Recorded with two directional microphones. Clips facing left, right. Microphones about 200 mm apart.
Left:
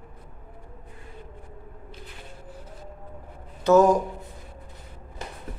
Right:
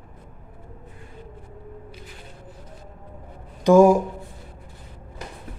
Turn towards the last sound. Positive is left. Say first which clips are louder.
# right 4 dB
turn(degrees=-10)  # may be behind; listen again after turning